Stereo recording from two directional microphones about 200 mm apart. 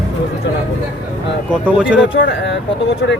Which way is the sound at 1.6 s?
5° right (ahead or behind).